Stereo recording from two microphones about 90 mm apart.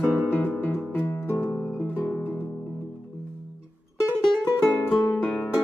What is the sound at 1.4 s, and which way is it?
Music, 15° left (ahead or behind).